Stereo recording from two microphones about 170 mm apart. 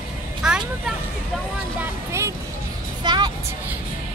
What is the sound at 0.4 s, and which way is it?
Vehicle, 5° right (ahead or behind).